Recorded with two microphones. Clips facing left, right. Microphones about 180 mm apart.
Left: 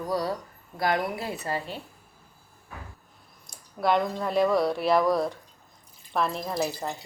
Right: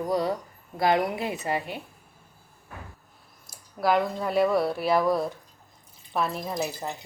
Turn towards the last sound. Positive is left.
turn(degrees=-5)  # may be behind; listen again after turning